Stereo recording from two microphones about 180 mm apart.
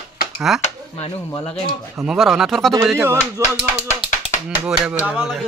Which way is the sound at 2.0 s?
Centre (ahead or behind).